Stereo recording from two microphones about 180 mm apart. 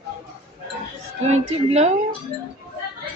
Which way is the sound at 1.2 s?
35° right (ahead or behind).